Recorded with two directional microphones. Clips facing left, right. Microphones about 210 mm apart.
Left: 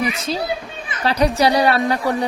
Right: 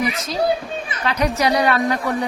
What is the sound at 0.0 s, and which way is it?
A child's voice, 30° left (ahead or behind).